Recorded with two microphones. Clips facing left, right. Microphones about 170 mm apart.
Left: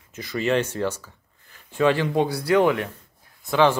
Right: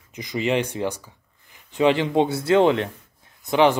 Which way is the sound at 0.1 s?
15° right (ahead or behind).